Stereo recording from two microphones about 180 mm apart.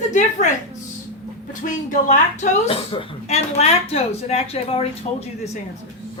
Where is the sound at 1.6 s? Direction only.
45° left (ahead or behind).